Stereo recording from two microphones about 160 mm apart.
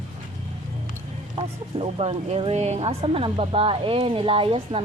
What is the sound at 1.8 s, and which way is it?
Speech, 40° right (ahead or behind).